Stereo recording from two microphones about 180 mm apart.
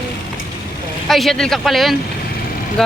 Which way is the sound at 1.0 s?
Centre (ahead or behind).